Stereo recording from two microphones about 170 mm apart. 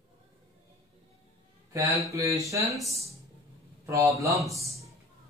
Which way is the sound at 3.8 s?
15° right (ahead or behind).